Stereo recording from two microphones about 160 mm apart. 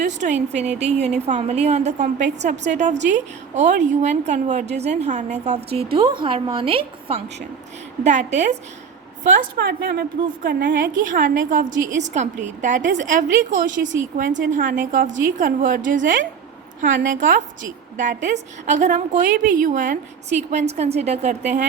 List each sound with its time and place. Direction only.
0.0 s a woman's voice: 50° right (ahead or behind); by 7.2 s 35° right (ahead or behind)
8.0 s a woman's voice: 45° right (ahead or behind)
9.4 s a woman's voice: 90° right; by 21.7 s 45° right (ahead or behind)